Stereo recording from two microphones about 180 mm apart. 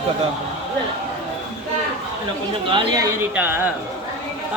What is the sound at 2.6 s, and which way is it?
Chatter, 25° right (ahead or behind).